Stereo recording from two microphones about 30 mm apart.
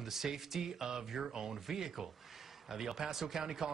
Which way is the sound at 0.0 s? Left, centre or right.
Centre.